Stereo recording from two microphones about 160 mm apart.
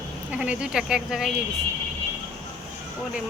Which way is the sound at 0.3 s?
5° right (ahead or behind).